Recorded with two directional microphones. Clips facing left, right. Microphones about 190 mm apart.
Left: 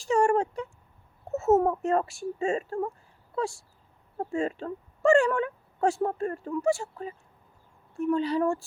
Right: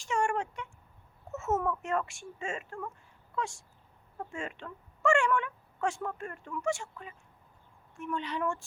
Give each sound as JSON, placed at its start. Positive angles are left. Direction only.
{"t": 0.0, "sound": "speech", "side_deg": 35}